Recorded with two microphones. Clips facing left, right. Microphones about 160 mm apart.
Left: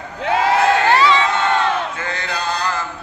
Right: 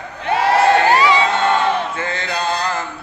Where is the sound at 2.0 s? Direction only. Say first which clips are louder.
Right 2 dB; 25° right (ahead or behind).